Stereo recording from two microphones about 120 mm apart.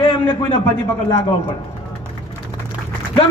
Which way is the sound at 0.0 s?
45° left (ahead or behind).